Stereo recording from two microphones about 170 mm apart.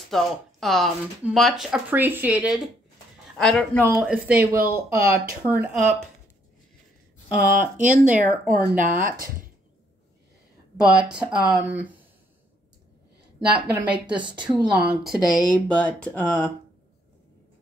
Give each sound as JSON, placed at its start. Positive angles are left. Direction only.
{"t": 0.1, "sound": "speech", "side_deg": 0}
{"t": 4.0, "sound": "speech", "side_deg": -10}
{"t": 7.7, "sound": "speech", "side_deg": -45}
{"t": 10.8, "sound": "speech", "side_deg": -5}
{"t": 13.5, "sound": "speech", "side_deg": -10}
{"t": 14.3, "sound": "speech", "side_deg": -25}
{"t": 14.9, "sound": "speech", "side_deg": 0}